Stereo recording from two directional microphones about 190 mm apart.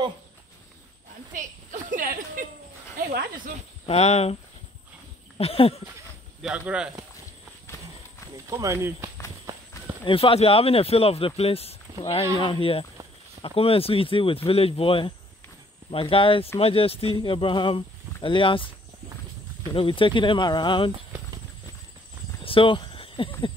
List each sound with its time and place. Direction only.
1.3 s a sound: 40° right (ahead or behind)
3.1 s speech: 50° right (ahead or behind)
3.8 s speech: 35° left (ahead or behind)
5.4 s speech: 30° left (ahead or behind)
6.4 s speech: 5° right (ahead or behind)
8.5 s speech: 15° right (ahead or behind)
10.0 s speech: 30° left (ahead or behind)
19.7 s speech: 25° left (ahead or behind)
22.4 s a sound: 30° left (ahead or behind)